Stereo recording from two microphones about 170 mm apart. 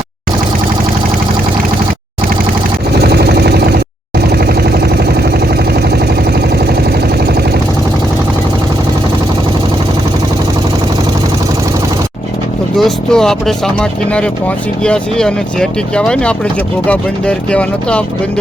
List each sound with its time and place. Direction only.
3.0 s vehicle: 70° right (ahead or behind)
12.7 s speech: 5° left (ahead or behind)
14.8 s speech: 5° left (ahead or behind)